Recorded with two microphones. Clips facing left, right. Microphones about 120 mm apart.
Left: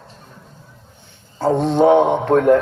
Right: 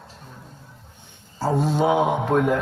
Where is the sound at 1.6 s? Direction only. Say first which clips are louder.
Left 8 dB; 65° left (ahead or behind).